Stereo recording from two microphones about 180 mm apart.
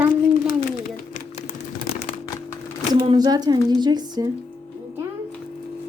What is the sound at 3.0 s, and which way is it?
Speech, 25° right (ahead or behind).